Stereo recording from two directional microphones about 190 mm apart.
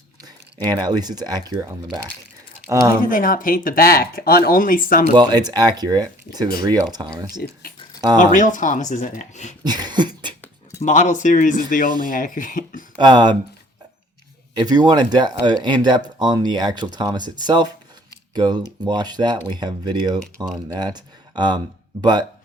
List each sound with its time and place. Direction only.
0.2 s speech: 20° right (ahead or behind)
3.0 s speech: 45° left (ahead or behind)
5.1 s speech: 20° right (ahead or behind)
7.6 s a sound: 50° left (ahead or behind)
8.3 s speech: 40° left (ahead or behind)
9.6 s a sound: 20° right (ahead or behind)
10.8 s speech: 40° left (ahead or behind)
13.0 s speech: 20° right (ahead or behind)
14.5 s speech: 20° right (ahead or behind)